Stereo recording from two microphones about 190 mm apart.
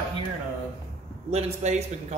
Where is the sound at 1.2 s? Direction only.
35° right (ahead or behind).